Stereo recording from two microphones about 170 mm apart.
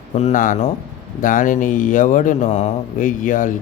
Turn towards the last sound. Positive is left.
turn(degrees=50)  # may be behind; listen again after turning